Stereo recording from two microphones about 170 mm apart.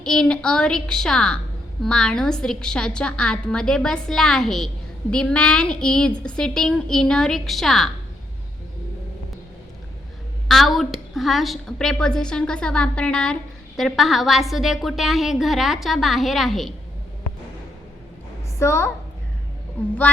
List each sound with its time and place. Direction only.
0.0 s a woman's voice: 5° left (ahead or behind)
10.5 s a woman's voice: centre (ahead or behind)
18.6 s a woman's voice: 15° left (ahead or behind)